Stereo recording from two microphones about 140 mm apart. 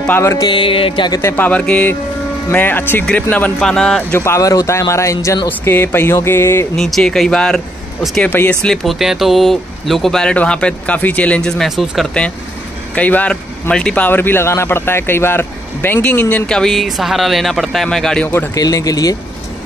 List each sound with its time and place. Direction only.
0.0 s music: 15° left (ahead or behind)
0.5 s music: 40° left (ahead or behind)
1.2 s a man's voice: 15° left (ahead or behind)
4.1 s speech: 20° left (ahead or behind)
6.8 s speech: 5° left (ahead or behind)
8.3 s a man's voice: 10° left (ahead or behind)
8.8 s a man's voice: centre (ahead or behind)
18.5 s speech: 25° left (ahead or behind)